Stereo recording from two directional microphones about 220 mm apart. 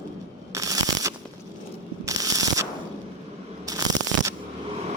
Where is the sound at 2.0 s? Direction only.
15° right (ahead or behind).